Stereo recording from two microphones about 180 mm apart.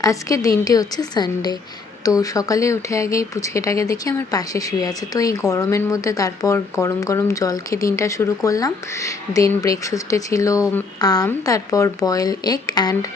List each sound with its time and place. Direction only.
0.0 s speech: 20° left (ahead or behind)